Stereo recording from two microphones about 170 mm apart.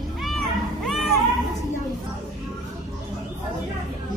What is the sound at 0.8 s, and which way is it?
Music, centre (ahead or behind).